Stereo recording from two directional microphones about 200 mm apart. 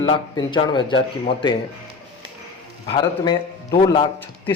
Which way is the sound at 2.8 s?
20° left (ahead or behind).